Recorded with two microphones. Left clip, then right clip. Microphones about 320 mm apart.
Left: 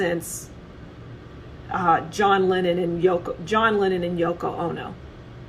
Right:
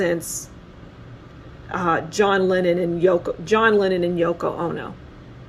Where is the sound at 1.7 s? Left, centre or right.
Right.